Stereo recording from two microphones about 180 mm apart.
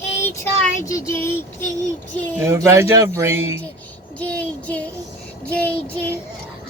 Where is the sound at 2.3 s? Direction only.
15° right (ahead or behind).